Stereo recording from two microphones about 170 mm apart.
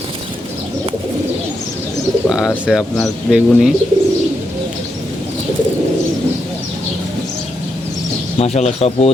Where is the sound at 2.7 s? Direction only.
Centre (ahead or behind).